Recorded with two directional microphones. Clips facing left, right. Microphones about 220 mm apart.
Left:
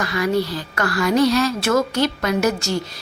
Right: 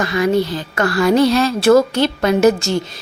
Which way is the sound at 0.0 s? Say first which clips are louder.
Right 4 dB; 25° right (ahead or behind).